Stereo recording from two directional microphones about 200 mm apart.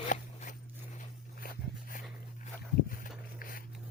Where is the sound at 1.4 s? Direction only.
45° left (ahead or behind).